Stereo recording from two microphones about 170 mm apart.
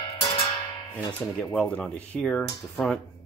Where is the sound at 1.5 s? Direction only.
5° left (ahead or behind).